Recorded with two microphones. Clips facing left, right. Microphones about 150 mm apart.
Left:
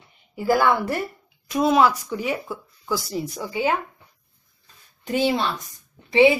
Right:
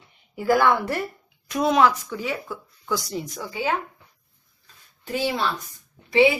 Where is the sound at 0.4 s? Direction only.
10° left (ahead or behind).